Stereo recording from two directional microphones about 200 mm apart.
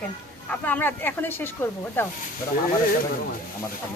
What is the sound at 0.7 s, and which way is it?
Speech, 10° left (ahead or behind).